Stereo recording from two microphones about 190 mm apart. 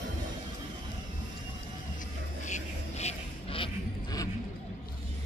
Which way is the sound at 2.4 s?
40° left (ahead or behind).